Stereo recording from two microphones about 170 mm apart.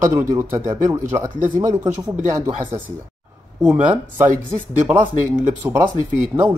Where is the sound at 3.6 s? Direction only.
10° right (ahead or behind).